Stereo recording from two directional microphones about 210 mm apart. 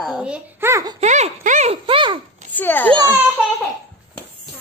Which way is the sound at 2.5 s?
10° left (ahead or behind).